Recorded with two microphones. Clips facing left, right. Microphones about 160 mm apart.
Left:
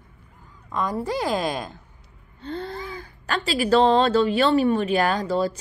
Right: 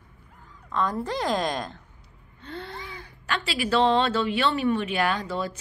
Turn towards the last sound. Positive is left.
turn(degrees=35)  # may be behind; listen again after turning